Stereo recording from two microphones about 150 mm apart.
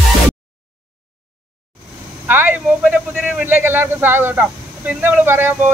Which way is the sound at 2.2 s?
10° right (ahead or behind).